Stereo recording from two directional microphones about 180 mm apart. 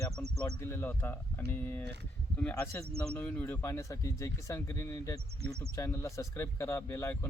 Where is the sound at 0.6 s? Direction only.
15° left (ahead or behind).